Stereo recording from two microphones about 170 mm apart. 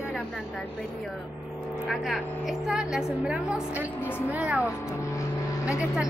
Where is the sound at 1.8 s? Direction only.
Centre (ahead or behind).